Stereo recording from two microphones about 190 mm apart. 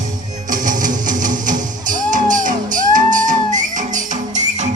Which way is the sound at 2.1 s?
45° right (ahead or behind).